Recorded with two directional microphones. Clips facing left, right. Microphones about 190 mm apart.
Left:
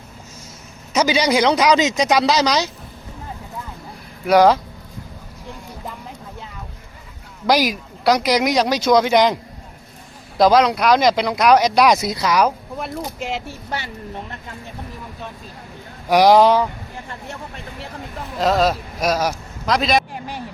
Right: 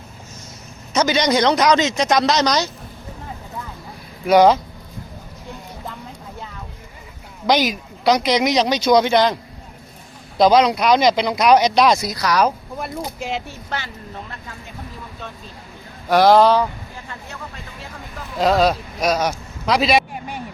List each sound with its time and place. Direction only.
0.9 s speech: 10° left (ahead or behind)
7.4 s speech: 5° left (ahead or behind)
9.1 s speech: 15° left (ahead or behind)
10.3 s speech: centre (ahead or behind)
11.9 s speech: 25° left (ahead or behind)
12.4 s speech: centre (ahead or behind)
13.7 s speech: 15° left (ahead or behind)
16.0 s speech: 15° left (ahead or behind)
18.3 s a man's voice: centre (ahead or behind)